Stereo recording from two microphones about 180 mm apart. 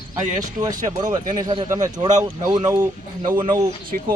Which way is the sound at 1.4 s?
25° right (ahead or behind).